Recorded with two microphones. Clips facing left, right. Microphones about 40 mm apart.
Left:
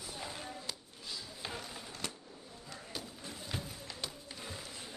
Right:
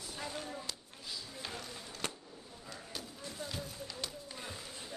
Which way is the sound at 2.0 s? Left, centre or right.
Right.